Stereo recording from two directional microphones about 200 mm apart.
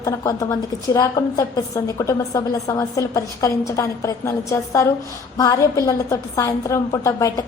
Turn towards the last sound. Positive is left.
turn(degrees=15)  # may be behind; listen again after turning